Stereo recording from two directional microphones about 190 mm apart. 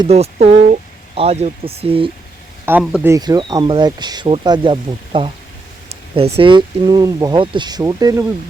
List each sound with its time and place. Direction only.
0.0 s speech: 35° right (ahead or behind)
2.6 s speech: 10° right (ahead or behind)